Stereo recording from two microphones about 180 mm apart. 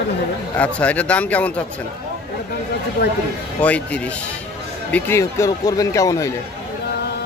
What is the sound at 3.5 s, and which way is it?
Speech, 5° left (ahead or behind).